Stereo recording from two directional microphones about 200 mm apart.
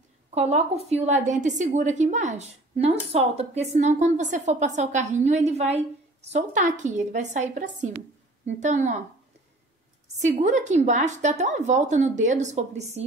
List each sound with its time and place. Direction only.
0.3 s a woman's voice: 35° right (ahead or behind)
10.2 s a woman's voice: 35° right (ahead or behind)